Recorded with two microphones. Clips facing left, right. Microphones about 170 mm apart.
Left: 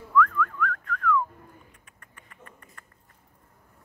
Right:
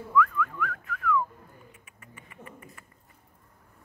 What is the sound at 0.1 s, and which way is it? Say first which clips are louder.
Whistling: left 2 dB; 5° right (ahead or behind).